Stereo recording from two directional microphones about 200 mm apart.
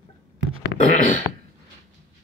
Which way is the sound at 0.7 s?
40° left (ahead or behind).